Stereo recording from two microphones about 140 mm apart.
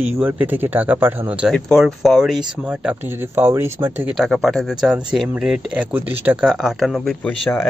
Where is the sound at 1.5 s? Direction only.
Centre (ahead or behind).